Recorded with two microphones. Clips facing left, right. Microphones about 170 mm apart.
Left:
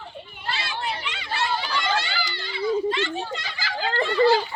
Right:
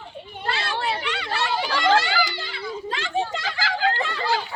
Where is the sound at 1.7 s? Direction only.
85° right.